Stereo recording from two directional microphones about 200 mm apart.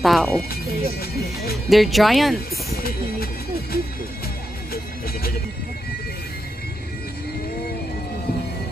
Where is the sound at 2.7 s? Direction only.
50° left (ahead or behind).